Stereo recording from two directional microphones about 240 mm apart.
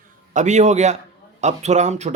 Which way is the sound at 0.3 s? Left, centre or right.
Right.